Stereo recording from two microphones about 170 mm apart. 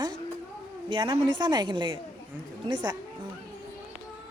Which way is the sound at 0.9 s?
30° right (ahead or behind).